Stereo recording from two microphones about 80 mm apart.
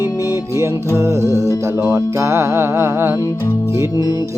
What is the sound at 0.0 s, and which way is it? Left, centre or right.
Music, left.